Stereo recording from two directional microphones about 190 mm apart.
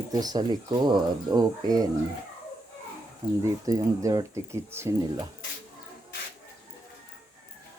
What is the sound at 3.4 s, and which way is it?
Speech, 15° right (ahead or behind).